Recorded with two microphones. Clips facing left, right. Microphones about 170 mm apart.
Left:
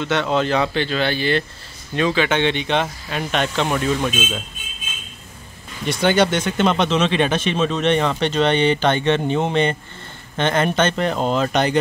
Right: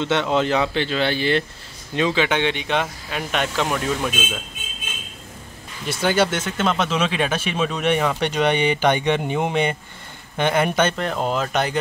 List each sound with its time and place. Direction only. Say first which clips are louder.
0.0 s speech: even; 20° right (ahead or behind); by 4.1 s 5° right (ahead or behind)
5.9 s speech: left 3 dB; 5° right (ahead or behind)